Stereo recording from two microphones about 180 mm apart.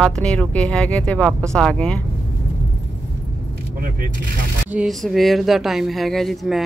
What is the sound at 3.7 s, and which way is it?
Speech, 55° right (ahead or behind).